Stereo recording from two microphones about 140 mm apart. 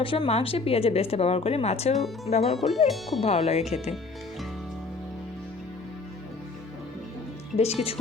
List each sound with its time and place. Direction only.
0.0 s speech: 40° left (ahead or behind)
2.6 s speech: centre (ahead or behind)
3.2 s speech: 50° left (ahead or behind)
7.5 s speech: 45° left (ahead or behind)